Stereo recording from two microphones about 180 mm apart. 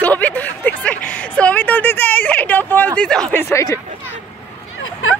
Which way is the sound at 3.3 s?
15° left (ahead or behind).